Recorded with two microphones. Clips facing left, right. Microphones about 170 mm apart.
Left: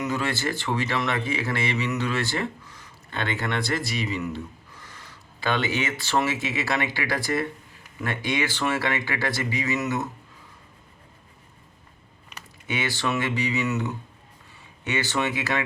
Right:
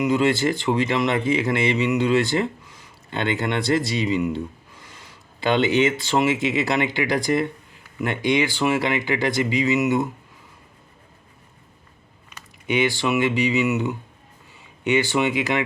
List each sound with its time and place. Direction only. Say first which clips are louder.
0.0 s speech: right 8 dB; 15° right (ahead or behind)
12.6 s speech: right 6 dB; 15° right (ahead or behind)